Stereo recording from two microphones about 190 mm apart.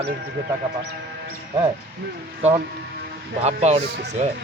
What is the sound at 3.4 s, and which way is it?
Speech, 35° right (ahead or behind).